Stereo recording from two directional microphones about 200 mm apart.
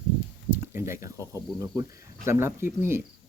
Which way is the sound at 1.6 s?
15° right (ahead or behind).